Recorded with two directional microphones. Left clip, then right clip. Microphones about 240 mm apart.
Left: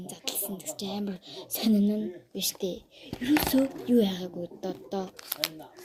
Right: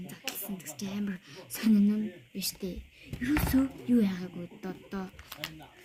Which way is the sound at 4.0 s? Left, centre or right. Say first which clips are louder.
Left 5 dB; centre.